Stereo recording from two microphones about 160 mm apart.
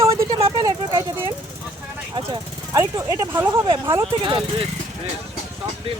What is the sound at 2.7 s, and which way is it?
Speech, 20° right (ahead or behind).